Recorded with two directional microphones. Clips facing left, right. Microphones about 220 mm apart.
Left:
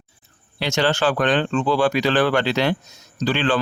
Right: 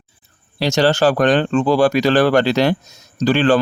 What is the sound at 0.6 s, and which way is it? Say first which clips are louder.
Speech: right 5 dB; 35° right (ahead or behind).